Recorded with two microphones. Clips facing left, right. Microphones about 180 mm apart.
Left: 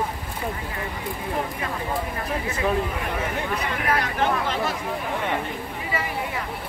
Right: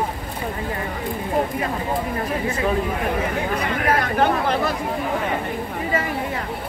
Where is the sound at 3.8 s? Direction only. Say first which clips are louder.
Right 5 dB; 50° right (ahead or behind).